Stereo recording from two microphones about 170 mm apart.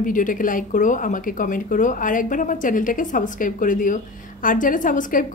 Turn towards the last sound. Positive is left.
turn(degrees=50)  # may be behind; listen again after turning